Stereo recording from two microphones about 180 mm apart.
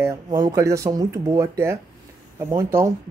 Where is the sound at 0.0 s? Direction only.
20° right (ahead or behind).